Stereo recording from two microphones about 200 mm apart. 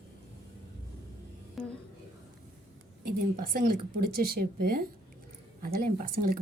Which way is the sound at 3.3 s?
45° right (ahead or behind).